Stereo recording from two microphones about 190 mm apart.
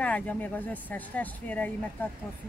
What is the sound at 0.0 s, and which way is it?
Speech, 5° left (ahead or behind).